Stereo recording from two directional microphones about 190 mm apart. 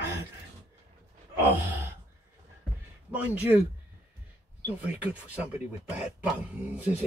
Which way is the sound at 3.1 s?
10° right (ahead or behind).